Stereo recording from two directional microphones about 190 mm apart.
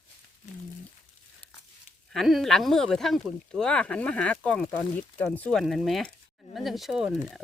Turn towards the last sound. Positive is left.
turn(degrees=0)  # may be behind; listen again after turning